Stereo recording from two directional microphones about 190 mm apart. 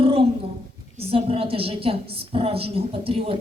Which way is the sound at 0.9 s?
30° right (ahead or behind).